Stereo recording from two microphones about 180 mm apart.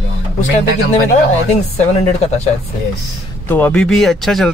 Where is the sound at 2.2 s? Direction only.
35° left (ahead or behind).